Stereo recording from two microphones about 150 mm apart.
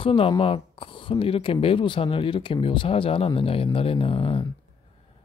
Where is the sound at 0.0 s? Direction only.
35° left (ahead or behind).